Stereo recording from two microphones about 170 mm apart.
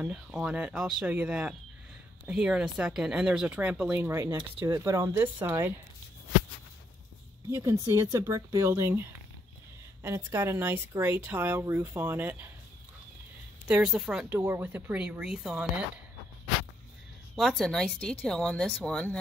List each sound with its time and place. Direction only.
0.0 s speech: 5° right (ahead or behind)
7.4 s speech: 15° right (ahead or behind)
13.7 s speech: 5° right (ahead or behind)
17.4 s speech: centre (ahead or behind)